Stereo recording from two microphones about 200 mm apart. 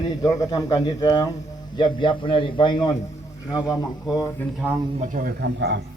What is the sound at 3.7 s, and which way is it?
Speech, 20° left (ahead or behind).